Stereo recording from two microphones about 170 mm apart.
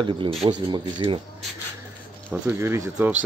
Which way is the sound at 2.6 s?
15° right (ahead or behind).